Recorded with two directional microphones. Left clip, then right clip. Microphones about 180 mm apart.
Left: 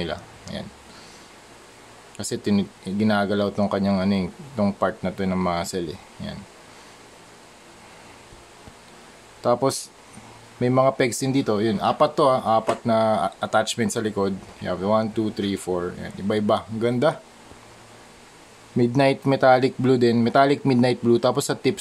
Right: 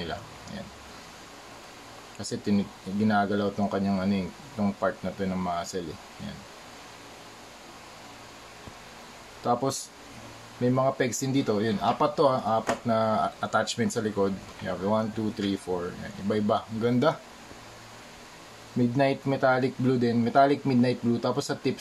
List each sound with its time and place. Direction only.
0.0 s a sound: 50° left (ahead or behind)
2.1 s speech: 50° left (ahead or behind)
9.4 s speech: 50° left (ahead or behind); by 17.2 s 35° left (ahead or behind)
18.8 s speech: 50° left (ahead or behind)